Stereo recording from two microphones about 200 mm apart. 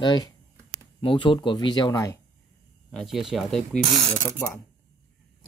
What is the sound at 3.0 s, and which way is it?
Speech, centre (ahead or behind).